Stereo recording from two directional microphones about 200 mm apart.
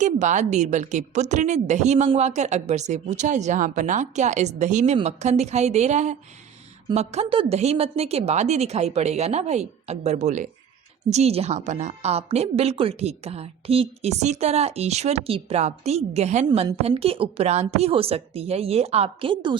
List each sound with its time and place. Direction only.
0.0 s a woman's voice: 35° right (ahead or behind)